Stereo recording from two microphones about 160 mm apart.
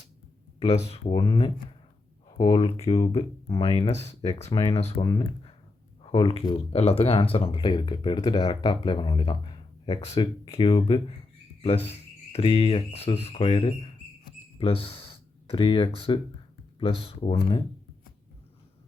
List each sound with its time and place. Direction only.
0.6 s speech: 40° left (ahead or behind)
1.2 s speech: 30° left (ahead or behind)
5.0 s speech: 30° left (ahead or behind)